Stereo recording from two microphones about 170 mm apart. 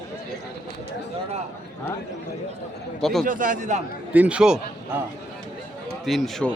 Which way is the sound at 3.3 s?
50° right (ahead or behind).